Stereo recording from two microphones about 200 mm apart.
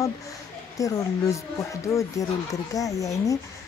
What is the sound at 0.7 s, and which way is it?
Speech, 15° left (ahead or behind).